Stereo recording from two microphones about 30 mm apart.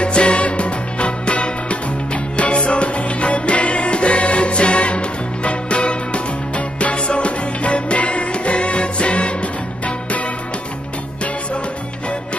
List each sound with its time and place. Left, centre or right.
0.0 s music: left